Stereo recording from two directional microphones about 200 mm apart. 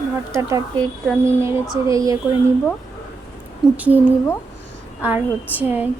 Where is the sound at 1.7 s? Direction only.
15° right (ahead or behind).